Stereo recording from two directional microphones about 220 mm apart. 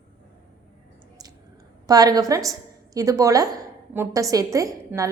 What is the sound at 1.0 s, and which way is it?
Clicking, 15° right (ahead or behind).